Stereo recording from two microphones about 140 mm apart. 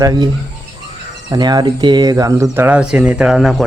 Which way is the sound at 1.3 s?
30° right (ahead or behind).